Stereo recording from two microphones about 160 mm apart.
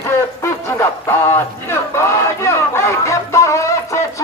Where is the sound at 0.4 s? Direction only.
15° left (ahead or behind).